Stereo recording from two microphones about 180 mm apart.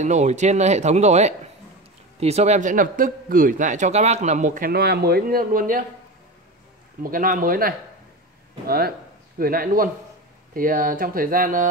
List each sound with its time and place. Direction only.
0.0 s a man's voice: 40° right (ahead or behind)
7.0 s a man's voice: 50° right (ahead or behind)